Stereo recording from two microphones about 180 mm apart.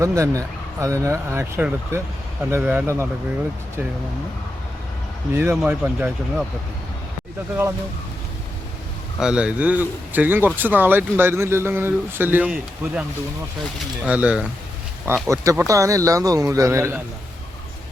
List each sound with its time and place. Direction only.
0.0 s speech: 20° right (ahead or behind)
5.3 s speech: 10° right (ahead or behind)
9.1 s speech: 5° right (ahead or behind)